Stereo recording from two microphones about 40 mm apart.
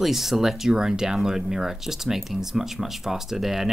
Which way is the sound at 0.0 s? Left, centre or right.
Centre.